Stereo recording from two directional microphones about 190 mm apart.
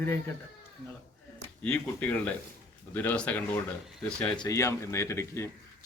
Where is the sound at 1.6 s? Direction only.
5° left (ahead or behind).